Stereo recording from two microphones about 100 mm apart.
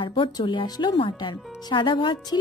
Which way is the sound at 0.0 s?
55° left (ahead or behind).